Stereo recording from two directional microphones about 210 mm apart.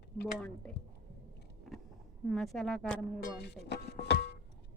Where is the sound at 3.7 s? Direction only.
55° left (ahead or behind).